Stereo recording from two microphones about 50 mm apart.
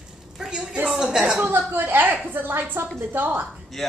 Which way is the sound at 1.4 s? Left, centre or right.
Right.